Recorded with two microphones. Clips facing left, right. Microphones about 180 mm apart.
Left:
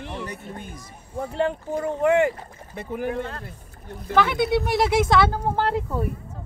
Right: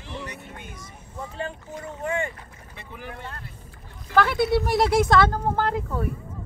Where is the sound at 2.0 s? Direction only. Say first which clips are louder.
Left 9 dB; 70° left (ahead or behind).